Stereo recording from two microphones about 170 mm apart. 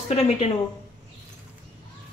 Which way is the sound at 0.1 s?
35° left (ahead or behind).